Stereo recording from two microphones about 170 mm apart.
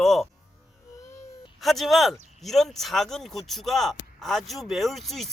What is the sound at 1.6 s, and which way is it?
Speech, centre (ahead or behind).